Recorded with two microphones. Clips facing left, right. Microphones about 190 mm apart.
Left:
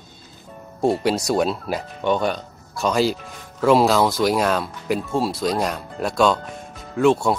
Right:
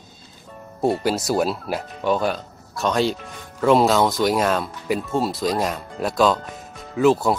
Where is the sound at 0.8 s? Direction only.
Centre (ahead or behind).